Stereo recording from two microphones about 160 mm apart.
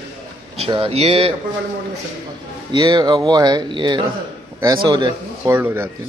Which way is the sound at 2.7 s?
25° right (ahead or behind).